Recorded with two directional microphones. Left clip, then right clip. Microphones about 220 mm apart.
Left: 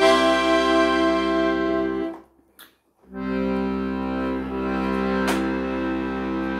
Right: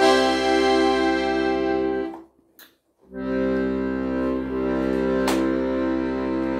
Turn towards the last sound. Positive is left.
turn(degrees=25)  # may be behind; listen again after turning